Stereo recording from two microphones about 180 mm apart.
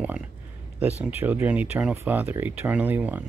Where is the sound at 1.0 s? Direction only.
10° right (ahead or behind).